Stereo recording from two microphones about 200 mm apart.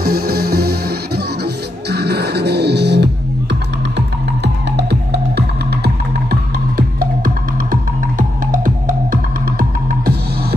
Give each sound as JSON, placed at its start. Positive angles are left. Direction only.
{"t": 0.0, "sound": "music", "side_deg": -50}
{"t": 4.7, "sound": "music", "side_deg": -55}
{"t": 7.0, "sound": "music", "side_deg": -45}